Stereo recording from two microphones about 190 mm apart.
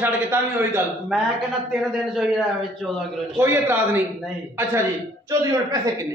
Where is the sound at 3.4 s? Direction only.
10° right (ahead or behind).